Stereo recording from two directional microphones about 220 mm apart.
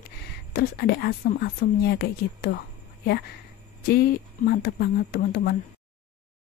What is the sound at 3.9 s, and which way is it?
Speech, 45° left (ahead or behind).